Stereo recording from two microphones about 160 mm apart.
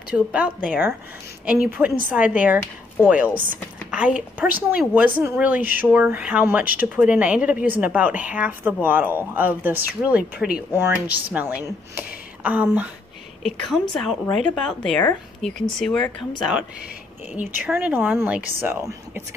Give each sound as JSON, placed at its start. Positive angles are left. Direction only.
{"t": 0.1, "sound": "a woman's voice", "side_deg": -10}
{"t": 13.4, "sound": "a woman's voice", "side_deg": 0}